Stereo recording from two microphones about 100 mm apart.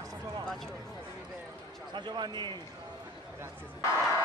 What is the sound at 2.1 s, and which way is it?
Speech, 45° right (ahead or behind).